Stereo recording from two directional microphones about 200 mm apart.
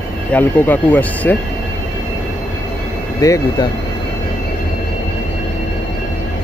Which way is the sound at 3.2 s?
15° left (ahead or behind).